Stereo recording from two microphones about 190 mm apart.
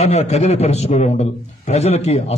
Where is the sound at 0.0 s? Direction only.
35° left (ahead or behind).